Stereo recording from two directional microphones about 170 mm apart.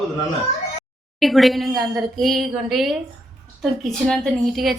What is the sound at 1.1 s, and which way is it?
Speech, centre (ahead or behind).